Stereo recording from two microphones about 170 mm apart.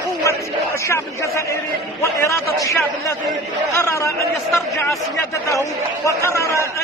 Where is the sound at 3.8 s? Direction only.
15° left (ahead or behind).